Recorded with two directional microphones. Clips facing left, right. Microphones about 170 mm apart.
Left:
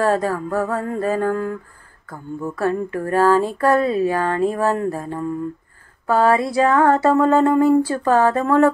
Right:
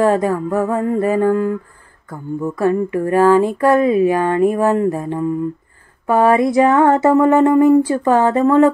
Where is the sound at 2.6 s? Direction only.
10° right (ahead or behind).